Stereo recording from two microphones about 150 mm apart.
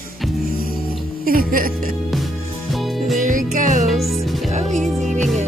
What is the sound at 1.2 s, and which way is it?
Speech, 70° right (ahead or behind).